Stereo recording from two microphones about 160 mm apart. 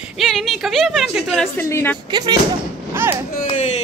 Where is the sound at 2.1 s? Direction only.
25° right (ahead or behind).